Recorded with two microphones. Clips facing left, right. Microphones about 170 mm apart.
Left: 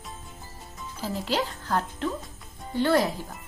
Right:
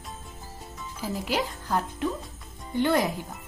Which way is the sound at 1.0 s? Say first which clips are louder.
Left 1 dB; 10° right (ahead or behind).